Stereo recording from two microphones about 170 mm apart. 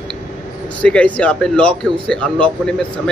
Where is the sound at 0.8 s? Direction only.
5° left (ahead or behind).